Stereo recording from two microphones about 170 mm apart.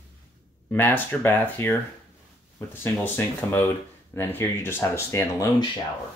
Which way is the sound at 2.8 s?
15° left (ahead or behind).